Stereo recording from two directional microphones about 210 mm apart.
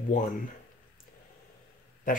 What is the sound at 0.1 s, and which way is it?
Speech, 35° left (ahead or behind).